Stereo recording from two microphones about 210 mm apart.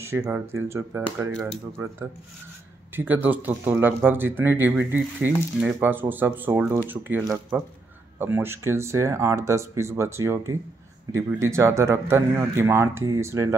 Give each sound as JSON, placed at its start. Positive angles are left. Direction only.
{"t": 0.0, "sound": "speech", "side_deg": -10}